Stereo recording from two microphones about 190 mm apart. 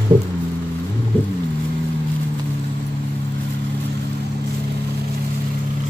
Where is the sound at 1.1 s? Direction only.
5° left (ahead or behind).